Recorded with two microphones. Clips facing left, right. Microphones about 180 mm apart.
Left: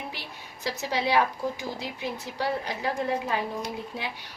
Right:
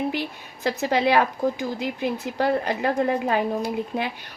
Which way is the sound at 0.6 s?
55° right (ahead or behind).